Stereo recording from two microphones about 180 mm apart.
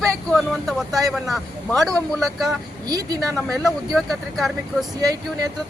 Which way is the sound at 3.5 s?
Centre (ahead or behind).